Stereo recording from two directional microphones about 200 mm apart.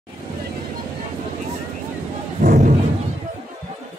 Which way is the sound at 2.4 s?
45° right (ahead or behind).